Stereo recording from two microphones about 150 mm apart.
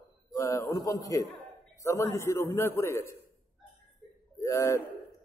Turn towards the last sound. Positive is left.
turn(degrees=20)  # may be behind; listen again after turning